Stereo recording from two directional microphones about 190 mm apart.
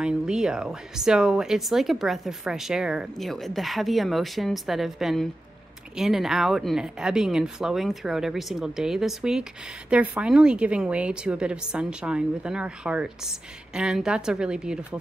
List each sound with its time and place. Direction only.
0.0 s speech: 5° right (ahead or behind)